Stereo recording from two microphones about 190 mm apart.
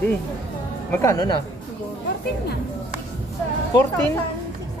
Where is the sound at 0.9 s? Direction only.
20° left (ahead or behind).